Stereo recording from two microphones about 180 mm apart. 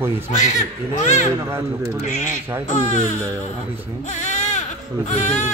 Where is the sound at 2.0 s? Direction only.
45° left (ahead or behind).